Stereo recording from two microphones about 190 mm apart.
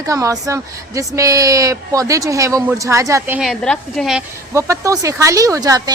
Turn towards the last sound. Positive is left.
turn(degrees=-20)  # may be behind; listen again after turning